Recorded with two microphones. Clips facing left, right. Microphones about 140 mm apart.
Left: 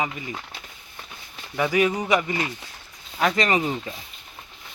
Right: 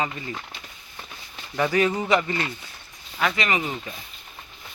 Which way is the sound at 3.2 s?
35° left (ahead or behind).